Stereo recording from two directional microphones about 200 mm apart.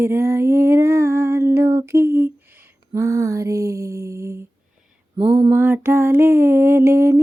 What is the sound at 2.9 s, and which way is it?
Lullaby, 15° right (ahead or behind).